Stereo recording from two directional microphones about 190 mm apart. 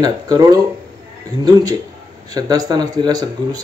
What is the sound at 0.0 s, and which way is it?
Speech, 20° right (ahead or behind).